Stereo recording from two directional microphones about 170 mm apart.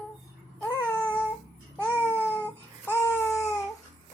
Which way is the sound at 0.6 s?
10° left (ahead or behind).